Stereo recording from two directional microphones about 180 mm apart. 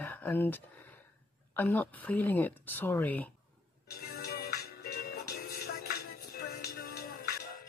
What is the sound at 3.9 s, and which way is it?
Music, 60° left (ahead or behind).